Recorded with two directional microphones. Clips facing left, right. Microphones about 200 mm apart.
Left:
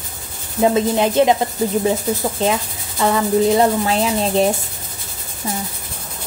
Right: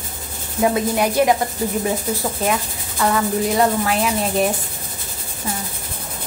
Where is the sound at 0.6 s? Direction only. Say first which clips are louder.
Left 3 dB; 25° left (ahead or behind).